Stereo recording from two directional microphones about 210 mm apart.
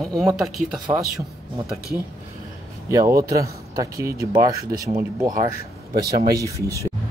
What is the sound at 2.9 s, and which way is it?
Speech, 15° right (ahead or behind).